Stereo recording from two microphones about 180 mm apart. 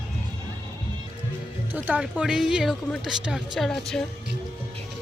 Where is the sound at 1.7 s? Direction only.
10° right (ahead or behind).